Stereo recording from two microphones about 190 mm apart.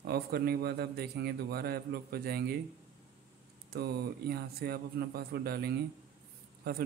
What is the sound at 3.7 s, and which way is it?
A man's voice, 55° right (ahead or behind).